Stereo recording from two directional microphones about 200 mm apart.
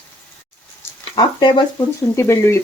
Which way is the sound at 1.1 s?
20° left (ahead or behind).